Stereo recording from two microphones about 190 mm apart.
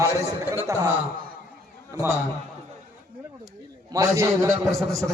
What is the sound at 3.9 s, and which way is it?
Speech, 15° right (ahead or behind).